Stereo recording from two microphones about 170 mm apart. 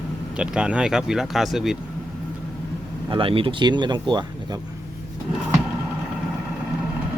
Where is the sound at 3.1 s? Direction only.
30° right (ahead or behind).